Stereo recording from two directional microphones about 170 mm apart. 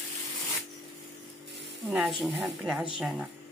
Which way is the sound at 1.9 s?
5° right (ahead or behind).